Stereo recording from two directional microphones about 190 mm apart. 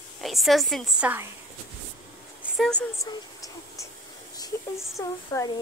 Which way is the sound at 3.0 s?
20° left (ahead or behind).